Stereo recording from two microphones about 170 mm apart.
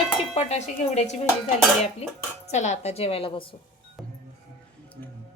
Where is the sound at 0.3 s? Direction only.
40° left (ahead or behind).